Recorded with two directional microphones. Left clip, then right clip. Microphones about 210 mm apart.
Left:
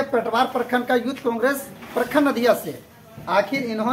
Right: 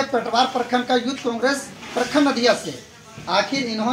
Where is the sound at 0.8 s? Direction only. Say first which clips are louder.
Right 1 dB; 30° left (ahead or behind).